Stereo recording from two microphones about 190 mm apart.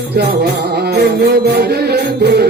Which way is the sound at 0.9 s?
55° right (ahead or behind).